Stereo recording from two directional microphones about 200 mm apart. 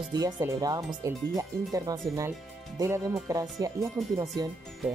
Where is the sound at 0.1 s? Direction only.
15° right (ahead or behind).